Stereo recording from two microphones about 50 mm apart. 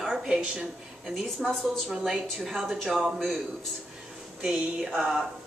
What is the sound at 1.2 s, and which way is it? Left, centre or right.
A woman's voice, centre.